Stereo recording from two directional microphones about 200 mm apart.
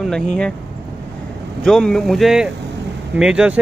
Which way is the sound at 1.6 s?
5° left (ahead or behind).